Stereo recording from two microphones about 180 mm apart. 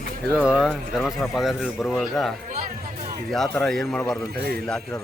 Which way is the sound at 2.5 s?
40° right (ahead or behind).